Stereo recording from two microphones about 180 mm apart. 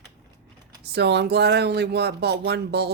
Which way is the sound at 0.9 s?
70° right (ahead or behind).